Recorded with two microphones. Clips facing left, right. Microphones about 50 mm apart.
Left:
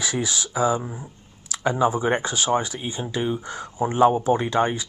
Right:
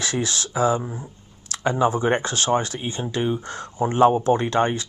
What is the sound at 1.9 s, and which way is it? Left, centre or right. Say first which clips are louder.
Speech: right 1 dB; centre.